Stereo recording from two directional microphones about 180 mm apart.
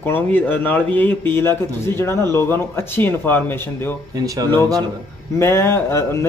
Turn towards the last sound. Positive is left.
turn(degrees=15)  # may be behind; listen again after turning